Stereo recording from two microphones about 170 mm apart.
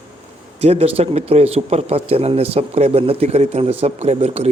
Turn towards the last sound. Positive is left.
turn(degrees=-40)  # may be behind; listen again after turning